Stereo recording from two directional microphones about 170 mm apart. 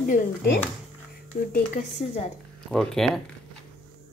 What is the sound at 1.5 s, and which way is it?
Speech, 45° left (ahead or behind).